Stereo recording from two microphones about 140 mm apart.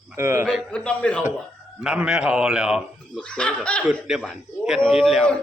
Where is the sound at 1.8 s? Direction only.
5° right (ahead or behind).